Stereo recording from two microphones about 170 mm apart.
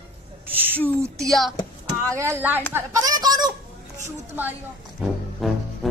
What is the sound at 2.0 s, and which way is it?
Speech, 15° right (ahead or behind).